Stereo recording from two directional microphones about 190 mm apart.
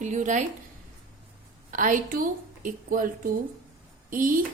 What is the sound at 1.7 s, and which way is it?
Speech, 45° right (ahead or behind).